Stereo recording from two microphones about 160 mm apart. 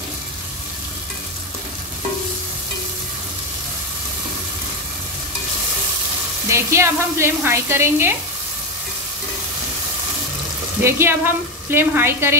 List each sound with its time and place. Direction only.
6.5 s sizzle: 15° right (ahead or behind)
10.8 s sizzle: 15° right (ahead or behind)